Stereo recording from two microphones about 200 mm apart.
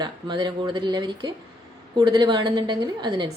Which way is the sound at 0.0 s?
20° right (ahead or behind).